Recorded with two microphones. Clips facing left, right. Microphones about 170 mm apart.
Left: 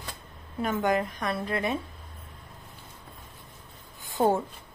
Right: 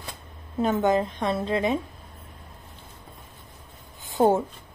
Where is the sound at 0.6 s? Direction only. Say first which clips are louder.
Right 4 dB; 25° right (ahead or behind).